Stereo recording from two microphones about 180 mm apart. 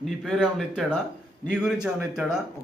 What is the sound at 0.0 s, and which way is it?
Speech, centre (ahead or behind).